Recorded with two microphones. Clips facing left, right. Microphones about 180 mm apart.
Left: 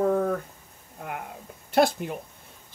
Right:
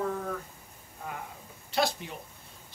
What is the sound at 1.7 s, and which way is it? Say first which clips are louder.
Speech: left 8 dB; 50° left (ahead or behind).